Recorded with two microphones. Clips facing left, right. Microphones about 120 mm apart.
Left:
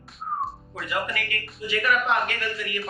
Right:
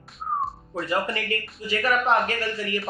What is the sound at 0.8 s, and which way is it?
Speech, 30° right (ahead or behind).